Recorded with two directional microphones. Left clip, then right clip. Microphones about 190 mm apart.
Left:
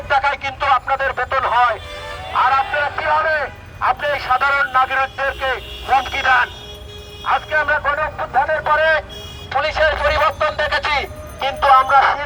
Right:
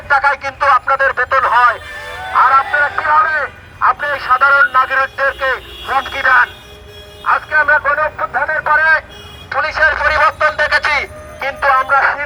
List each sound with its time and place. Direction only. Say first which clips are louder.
0.1 s speech: right 4 dB; 15° left (ahead or behind)
10.3 s a sound: right 5 dB; centre (ahead or behind)
11.3 s speech: left 1 dB; 10° left (ahead or behind)